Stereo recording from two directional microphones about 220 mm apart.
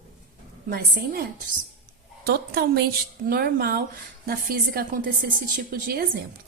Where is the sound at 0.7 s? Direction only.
40° right (ahead or behind).